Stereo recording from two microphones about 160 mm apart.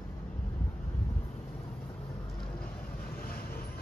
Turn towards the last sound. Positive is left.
turn(degrees=65)  # may be behind; listen again after turning